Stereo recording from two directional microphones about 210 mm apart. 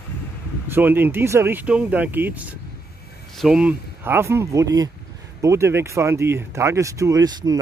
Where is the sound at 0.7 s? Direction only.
10° right (ahead or behind).